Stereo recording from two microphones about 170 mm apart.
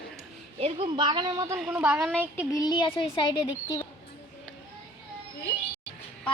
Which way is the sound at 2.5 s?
25° left (ahead or behind).